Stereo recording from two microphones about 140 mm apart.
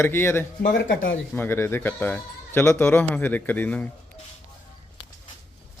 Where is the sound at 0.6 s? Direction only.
90° left.